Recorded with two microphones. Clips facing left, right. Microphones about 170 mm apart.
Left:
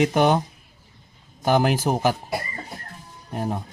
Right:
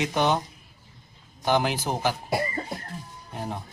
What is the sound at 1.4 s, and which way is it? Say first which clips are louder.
Speech: left 4 dB; 45° left (ahead or behind).